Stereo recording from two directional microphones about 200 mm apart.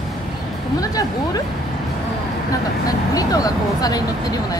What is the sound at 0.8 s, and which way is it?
Speech, 20° left (ahead or behind).